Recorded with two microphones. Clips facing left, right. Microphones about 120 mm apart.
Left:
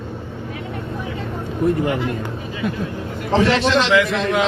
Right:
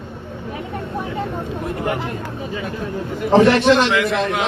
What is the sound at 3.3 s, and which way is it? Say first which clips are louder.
Speech: right 4 dB; 55° right (ahead or behind).